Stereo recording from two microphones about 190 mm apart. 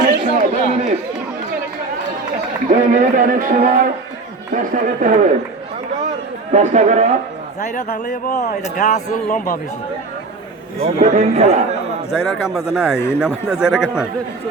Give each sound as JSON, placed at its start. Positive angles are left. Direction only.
{"t": 0.0, "sound": "chatter", "side_deg": -50}
{"t": 2.6, "sound": "speech", "side_deg": -45}
{"t": 6.5, "sound": "speech", "side_deg": -40}
{"t": 7.6, "sound": "speech", "side_deg": 40}
{"t": 8.0, "sound": "a man's voice", "side_deg": 55}
{"t": 8.9, "sound": "a man's voice", "side_deg": 40}
{"t": 10.8, "sound": "speech", "side_deg": -35}
{"t": 12.1, "sound": "a man's voice", "side_deg": 0}